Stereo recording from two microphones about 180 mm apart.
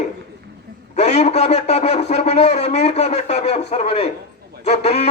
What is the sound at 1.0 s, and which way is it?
A man's voice, 40° left (ahead or behind).